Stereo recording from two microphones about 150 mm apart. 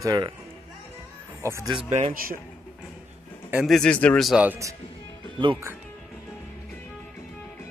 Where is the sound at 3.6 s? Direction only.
5° left (ahead or behind).